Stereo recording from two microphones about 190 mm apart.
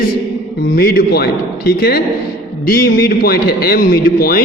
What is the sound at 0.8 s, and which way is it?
A man's voice, 55° left (ahead or behind).